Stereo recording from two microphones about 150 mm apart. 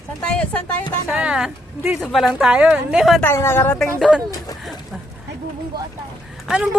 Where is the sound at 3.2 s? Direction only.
15° left (ahead or behind).